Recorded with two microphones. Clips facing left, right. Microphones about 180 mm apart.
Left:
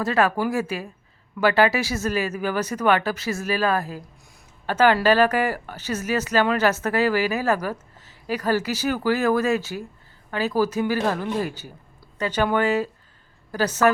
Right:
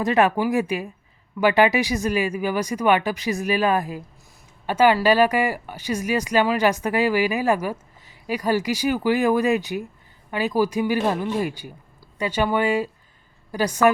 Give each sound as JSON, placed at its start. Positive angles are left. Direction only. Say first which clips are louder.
{"t": 0.0, "sound": "a woman's voice", "louder": "right 2 dB", "side_deg": -20}